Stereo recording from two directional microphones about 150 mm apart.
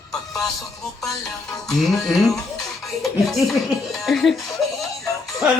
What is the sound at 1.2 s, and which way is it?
Speech, centre (ahead or behind).